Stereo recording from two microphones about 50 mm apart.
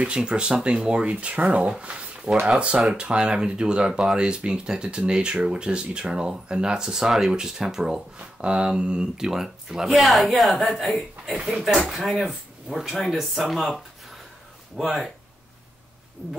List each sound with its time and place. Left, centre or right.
0.0 s speech: centre
14.8 s speech: centre